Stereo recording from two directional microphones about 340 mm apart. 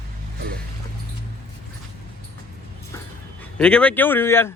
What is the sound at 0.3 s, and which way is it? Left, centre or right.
Music, right.